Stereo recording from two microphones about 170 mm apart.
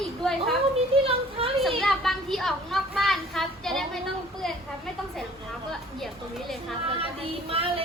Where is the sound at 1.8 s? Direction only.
Centre (ahead or behind).